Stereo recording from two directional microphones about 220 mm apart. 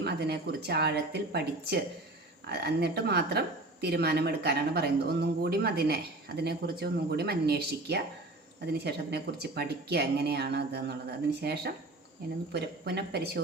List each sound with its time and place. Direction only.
0.0 s speech: 45° right (ahead or behind)